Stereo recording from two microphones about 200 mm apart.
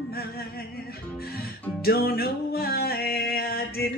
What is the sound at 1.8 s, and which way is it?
Music, 50° left (ahead or behind).